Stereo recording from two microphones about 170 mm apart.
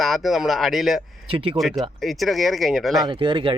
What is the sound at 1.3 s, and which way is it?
Speech, 30° right (ahead or behind).